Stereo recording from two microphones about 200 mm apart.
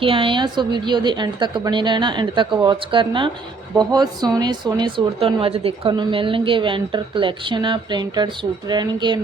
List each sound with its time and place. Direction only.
0.0 s speech: 25° right (ahead or behind)